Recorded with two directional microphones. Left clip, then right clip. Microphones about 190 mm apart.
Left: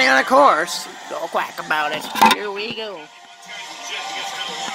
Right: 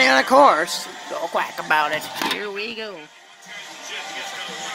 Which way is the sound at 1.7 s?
20° right (ahead or behind).